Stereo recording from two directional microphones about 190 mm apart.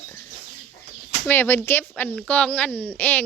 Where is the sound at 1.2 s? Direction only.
10° left (ahead or behind).